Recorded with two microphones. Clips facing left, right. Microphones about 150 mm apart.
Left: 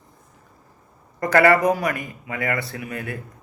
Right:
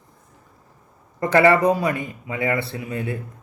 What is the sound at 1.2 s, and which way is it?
A man's voice, 25° right (ahead or behind).